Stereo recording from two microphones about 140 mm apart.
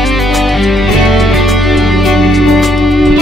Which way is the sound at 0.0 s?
Centre (ahead or behind).